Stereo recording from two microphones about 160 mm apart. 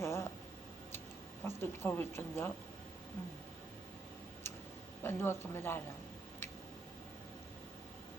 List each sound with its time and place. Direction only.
0.0 s a sound: 15° left (ahead or behind)
1.5 s speech: 15° left (ahead or behind)
5.0 s speech: 15° left (ahead or behind)